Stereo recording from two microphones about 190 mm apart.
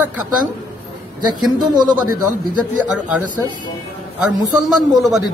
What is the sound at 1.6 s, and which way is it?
Speech, 20° right (ahead or behind).